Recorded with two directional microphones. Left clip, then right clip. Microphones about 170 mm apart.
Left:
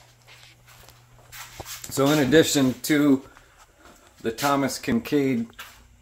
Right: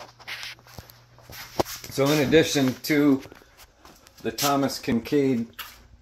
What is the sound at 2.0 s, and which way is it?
Speech, 20° left (ahead or behind).